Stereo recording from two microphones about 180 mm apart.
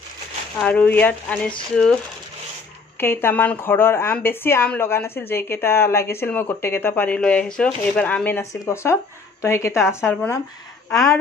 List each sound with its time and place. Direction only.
0.6 s a woman's voice: 5° left (ahead or behind)
3.0 s a woman's voice: 15° left (ahead or behind)